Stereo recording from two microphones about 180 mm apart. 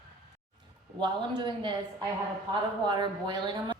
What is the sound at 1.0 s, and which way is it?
Speech, 25° right (ahead or behind).